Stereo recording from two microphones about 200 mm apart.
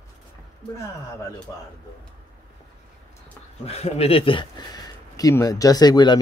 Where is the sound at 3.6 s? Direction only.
30° left (ahead or behind).